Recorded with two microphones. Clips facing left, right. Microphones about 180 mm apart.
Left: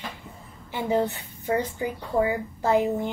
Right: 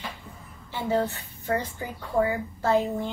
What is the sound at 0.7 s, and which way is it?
A woman's voice, 15° left (ahead or behind).